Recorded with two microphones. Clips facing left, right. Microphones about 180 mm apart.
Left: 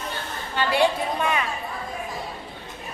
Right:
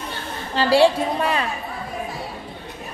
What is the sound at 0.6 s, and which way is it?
Speech, 35° right (ahead or behind).